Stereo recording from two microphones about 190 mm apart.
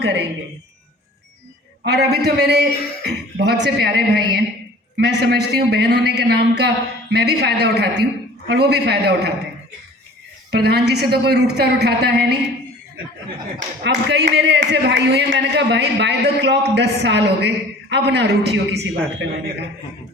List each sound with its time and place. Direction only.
0.0 s a man's voice: 65° right (ahead or behind)
1.8 s a man's voice: 60° right (ahead or behind)
10.5 s a man's voice: 60° right (ahead or behind)
13.8 s a man's voice: 65° right (ahead or behind)